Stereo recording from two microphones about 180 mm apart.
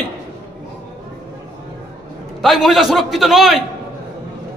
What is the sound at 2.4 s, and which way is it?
A man's voice, centre (ahead or behind).